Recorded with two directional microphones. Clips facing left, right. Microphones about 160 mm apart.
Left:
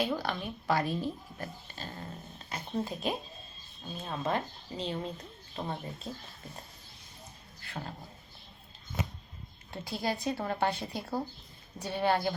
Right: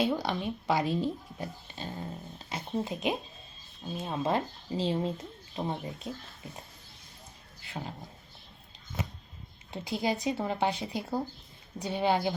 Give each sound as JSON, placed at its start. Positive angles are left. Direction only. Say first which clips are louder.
{"t": 0.1, "sound": "speech", "louder": "right 3 dB", "side_deg": -20}
{"t": 7.7, "sound": "speech", "louder": "right 2 dB", "side_deg": -10}
{"t": 9.7, "sound": "speech", "louder": "right 3 dB", "side_deg": -15}